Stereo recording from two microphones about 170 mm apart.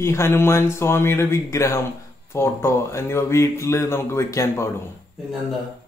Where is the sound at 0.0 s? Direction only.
15° left (ahead or behind).